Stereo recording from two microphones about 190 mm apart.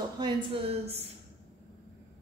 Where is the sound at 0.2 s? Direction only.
30° right (ahead or behind).